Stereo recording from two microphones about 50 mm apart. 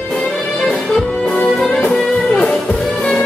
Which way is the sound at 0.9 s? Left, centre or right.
Centre.